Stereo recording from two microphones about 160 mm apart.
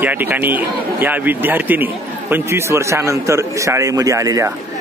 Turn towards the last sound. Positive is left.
turn(degrees=-20)  # may be behind; listen again after turning